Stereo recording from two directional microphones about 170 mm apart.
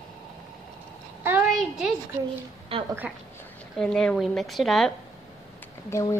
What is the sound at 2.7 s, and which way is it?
Speech, 35° right (ahead or behind).